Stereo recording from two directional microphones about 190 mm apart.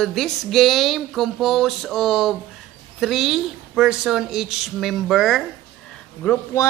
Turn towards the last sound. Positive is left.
turn(degrees=10)  # may be behind; listen again after turning